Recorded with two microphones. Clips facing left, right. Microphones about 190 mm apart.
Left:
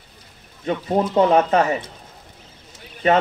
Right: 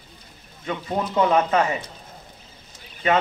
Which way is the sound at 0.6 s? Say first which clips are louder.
Left 6 dB; 40° left (ahead or behind).